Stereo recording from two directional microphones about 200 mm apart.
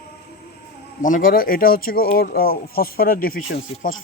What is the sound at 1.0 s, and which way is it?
Speech, 40° left (ahead or behind).